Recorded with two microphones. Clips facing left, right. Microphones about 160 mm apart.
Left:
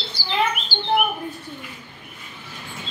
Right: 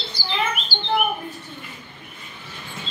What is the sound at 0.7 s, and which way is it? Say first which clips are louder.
Bird: left 2 dB; 15° right (ahead or behind).